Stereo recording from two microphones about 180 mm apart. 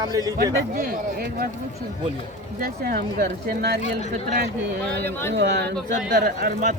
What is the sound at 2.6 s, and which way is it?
Speech, 60° right (ahead or behind).